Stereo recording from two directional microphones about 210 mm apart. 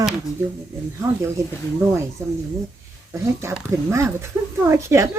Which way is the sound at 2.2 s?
15° right (ahead or behind).